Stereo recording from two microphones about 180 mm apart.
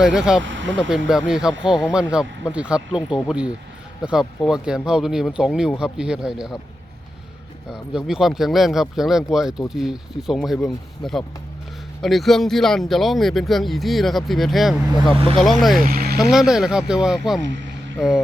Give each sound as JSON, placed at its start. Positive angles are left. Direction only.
{"t": 0.0, "sound": "speech", "side_deg": -5}
{"t": 0.4, "sound": "speech", "side_deg": -90}
{"t": 0.9, "sound": "speech", "side_deg": -5}
{"t": 7.7, "sound": "speech", "side_deg": -5}
{"t": 15.8, "sound": "speech", "side_deg": -55}
{"t": 16.1, "sound": "speech", "side_deg": 0}